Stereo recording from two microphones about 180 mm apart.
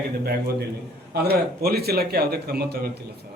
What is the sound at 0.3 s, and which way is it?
A man's voice, 60° right (ahead or behind).